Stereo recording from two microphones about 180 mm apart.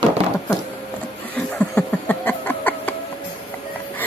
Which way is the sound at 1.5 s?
10° left (ahead or behind).